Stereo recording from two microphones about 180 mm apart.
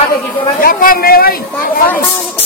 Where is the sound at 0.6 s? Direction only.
50° left (ahead or behind).